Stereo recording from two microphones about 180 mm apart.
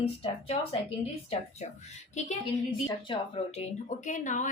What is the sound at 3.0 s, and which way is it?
Speech, 30° left (ahead or behind).